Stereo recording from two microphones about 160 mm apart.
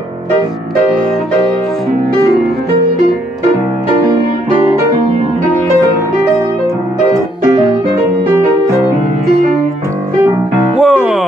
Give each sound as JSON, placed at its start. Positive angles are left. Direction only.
{"t": 7.1, "sound": "music", "side_deg": -20}
{"t": 9.3, "sound": "music", "side_deg": -45}
{"t": 10.8, "sound": "music", "side_deg": -5}